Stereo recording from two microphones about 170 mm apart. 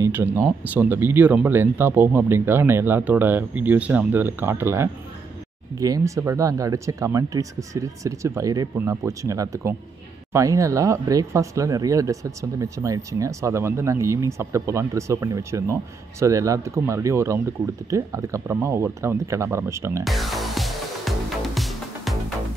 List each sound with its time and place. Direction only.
0.0 s speech: 15° right (ahead or behind)
20.1 s music: centre (ahead or behind)